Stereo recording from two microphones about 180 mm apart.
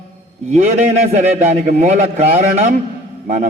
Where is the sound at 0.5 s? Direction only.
40° right (ahead or behind).